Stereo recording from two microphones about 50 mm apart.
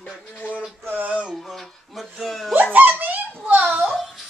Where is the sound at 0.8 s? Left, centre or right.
Right.